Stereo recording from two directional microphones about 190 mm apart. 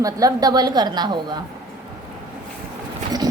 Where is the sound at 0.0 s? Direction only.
20° right (ahead or behind).